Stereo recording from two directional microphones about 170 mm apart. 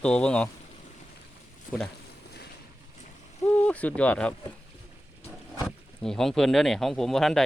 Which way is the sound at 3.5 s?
10° left (ahead or behind).